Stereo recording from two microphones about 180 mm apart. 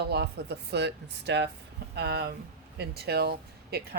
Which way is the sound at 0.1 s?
65° right (ahead or behind).